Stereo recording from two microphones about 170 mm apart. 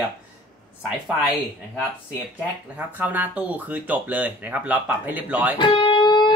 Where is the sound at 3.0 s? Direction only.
10° right (ahead or behind).